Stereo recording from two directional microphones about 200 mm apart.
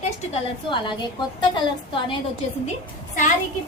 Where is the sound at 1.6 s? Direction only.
25° left (ahead or behind).